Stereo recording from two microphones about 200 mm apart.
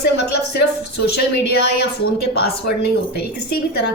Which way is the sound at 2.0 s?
50° left (ahead or behind).